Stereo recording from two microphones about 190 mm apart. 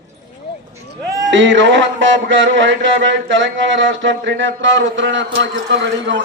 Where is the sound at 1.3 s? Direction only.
75° right (ahead or behind).